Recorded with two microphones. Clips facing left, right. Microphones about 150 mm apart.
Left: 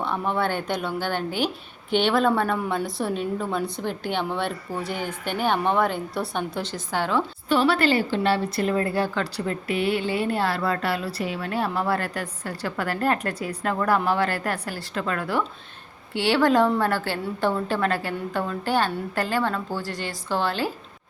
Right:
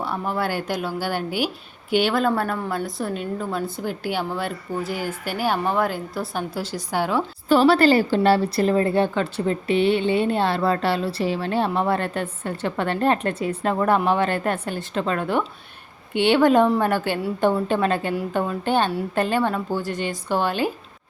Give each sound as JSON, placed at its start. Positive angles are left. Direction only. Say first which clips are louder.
{"t": 0.0, "sound": "a woman's voice", "louder": "even", "side_deg": -5}
{"t": 7.4, "sound": "a woman's voice", "louder": "right 6 dB", "side_deg": -40}